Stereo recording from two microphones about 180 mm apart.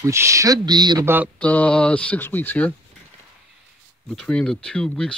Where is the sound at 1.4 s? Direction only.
10° left (ahead or behind).